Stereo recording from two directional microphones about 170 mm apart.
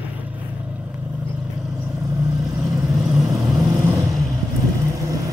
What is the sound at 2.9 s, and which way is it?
Vehicle, centre (ahead or behind).